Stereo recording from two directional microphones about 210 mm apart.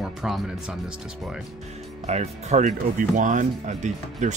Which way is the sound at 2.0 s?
35° right (ahead or behind).